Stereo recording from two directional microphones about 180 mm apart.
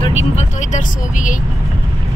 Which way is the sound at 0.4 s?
40° left (ahead or behind).